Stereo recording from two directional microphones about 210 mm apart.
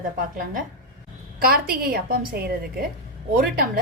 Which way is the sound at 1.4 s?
45° right (ahead or behind).